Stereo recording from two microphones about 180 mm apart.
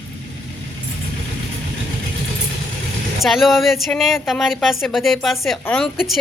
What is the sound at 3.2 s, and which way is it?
A woman's voice, centre (ahead or behind).